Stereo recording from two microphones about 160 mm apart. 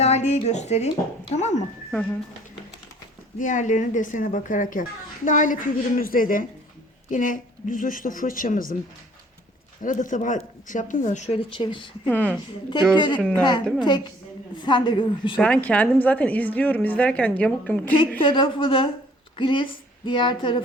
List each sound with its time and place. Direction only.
0.0 s speech: 45° left (ahead or behind)
1.9 s speech: 5° left (ahead or behind)
3.3 s speech: 55° left (ahead or behind)
9.8 s speech: 55° left (ahead or behind); by 11.9 s 30° left (ahead or behind)
12.0 s a woman's voice: 10° left (ahead or behind)
13.7 s a woman's voice: 30° left (ahead or behind)
15.4 s a woman's voice: 5° left (ahead or behind)
18.2 s speech: 30° left (ahead or behind)